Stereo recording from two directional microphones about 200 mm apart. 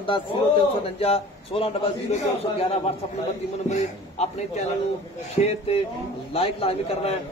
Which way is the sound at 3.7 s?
35° left (ahead or behind).